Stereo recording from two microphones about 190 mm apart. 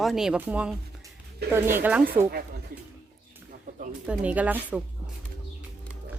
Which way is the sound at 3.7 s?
45° right (ahead or behind).